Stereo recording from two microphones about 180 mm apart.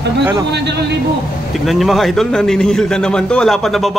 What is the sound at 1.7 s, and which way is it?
A man's voice, centre (ahead or behind).